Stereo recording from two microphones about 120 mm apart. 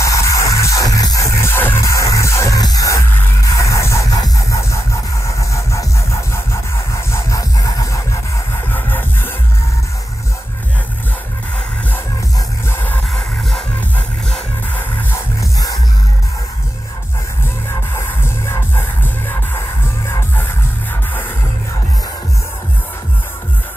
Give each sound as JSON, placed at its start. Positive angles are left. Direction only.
{"t": 0.0, "sound": "music", "side_deg": 25}
{"t": 8.7, "sound": "music", "side_deg": 15}
{"t": 12.7, "sound": "music", "side_deg": 15}
{"t": 13.1, "sound": "music", "side_deg": 0}
{"t": 17.9, "sound": "music", "side_deg": 20}